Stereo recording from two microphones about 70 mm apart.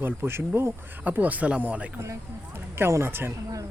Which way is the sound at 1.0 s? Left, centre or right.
Right.